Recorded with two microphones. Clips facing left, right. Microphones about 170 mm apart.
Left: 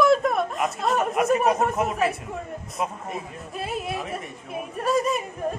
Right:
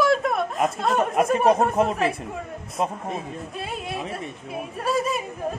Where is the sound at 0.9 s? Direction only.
30° right (ahead or behind).